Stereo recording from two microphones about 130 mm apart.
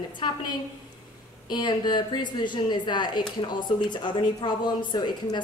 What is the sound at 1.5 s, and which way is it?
A woman's voice, 35° left (ahead or behind).